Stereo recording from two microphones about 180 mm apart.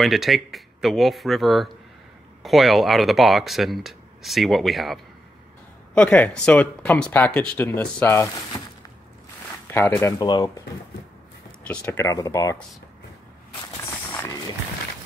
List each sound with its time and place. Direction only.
0.0 s speech: centre (ahead or behind)
9.7 s speech: 10° left (ahead or behind)
11.6 s speech: 10° left (ahead or behind)